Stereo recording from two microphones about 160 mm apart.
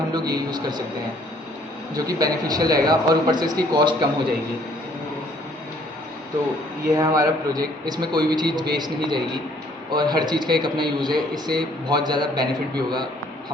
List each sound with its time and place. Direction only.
0.1 s a man's voice: 25° right (ahead or behind)
2.0 s a man's voice: 25° right (ahead or behind)
6.9 s a man's voice: 20° right (ahead or behind)